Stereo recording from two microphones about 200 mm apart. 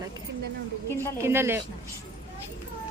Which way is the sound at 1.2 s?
10° right (ahead or behind).